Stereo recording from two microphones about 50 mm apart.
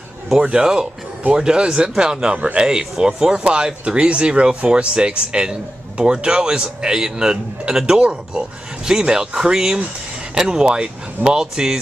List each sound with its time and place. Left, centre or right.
0.3 s a man's voice: centre